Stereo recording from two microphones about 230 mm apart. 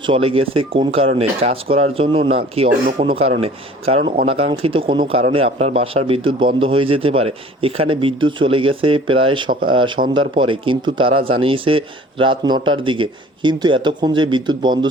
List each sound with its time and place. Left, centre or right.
0.1 s speech: right